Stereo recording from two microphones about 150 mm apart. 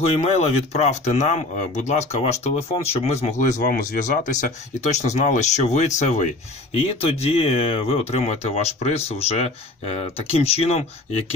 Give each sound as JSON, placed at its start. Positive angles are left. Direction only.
{"t": 0.0, "sound": "speech", "side_deg": 45}
{"t": 3.6, "sound": "speech", "side_deg": 70}
{"t": 6.7, "sound": "speech", "side_deg": 40}